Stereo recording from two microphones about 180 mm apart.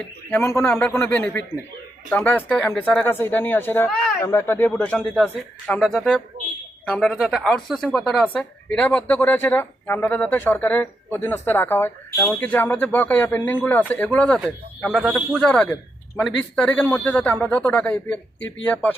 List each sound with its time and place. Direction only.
0.0 s speech: 10° left (ahead or behind)
18.3 s speech: 90° left